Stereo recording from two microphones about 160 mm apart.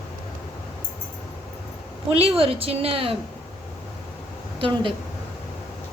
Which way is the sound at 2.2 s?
35° right (ahead or behind).